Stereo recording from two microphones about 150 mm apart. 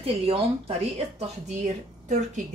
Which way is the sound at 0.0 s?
40° right (ahead or behind).